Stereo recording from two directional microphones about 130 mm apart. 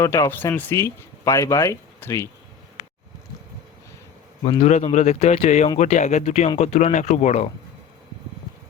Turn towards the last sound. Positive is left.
turn(degrees=60)  # may be behind; listen again after turning